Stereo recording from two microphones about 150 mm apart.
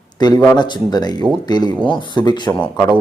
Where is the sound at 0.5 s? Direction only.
30° left (ahead or behind).